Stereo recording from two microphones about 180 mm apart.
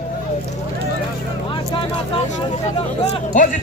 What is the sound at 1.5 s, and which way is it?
Vehicle, 30° left (ahead or behind).